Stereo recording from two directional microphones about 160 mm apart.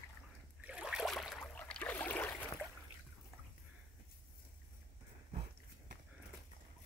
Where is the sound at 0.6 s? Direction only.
5° right (ahead or behind); by 2.5 s 10° left (ahead or behind).